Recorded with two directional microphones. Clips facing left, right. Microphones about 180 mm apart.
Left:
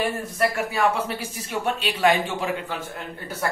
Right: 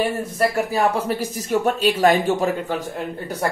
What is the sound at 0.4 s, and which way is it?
A man's voice, 35° right (ahead or behind).